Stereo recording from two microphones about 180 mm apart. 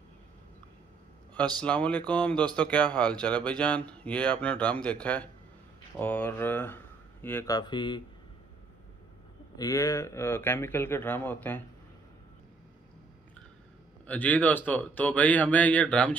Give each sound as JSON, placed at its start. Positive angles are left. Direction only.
{"t": 1.3, "sound": "speech", "side_deg": 5}
{"t": 7.5, "sound": "speech", "side_deg": 25}
{"t": 9.6, "sound": "speech", "side_deg": 15}
{"t": 14.0, "sound": "speech", "side_deg": 10}